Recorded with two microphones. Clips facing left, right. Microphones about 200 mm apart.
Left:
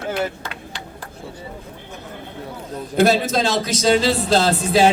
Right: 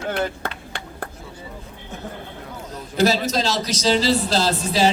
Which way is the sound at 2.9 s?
55° left (ahead or behind).